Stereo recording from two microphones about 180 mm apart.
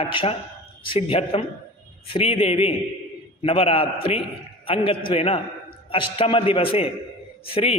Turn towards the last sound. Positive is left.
turn(degrees=30)  # may be behind; listen again after turning